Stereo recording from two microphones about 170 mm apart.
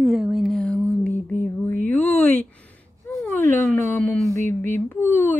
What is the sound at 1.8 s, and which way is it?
Speech, 10° left (ahead or behind).